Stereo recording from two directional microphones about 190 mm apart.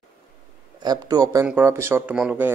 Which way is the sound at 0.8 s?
20° right (ahead or behind).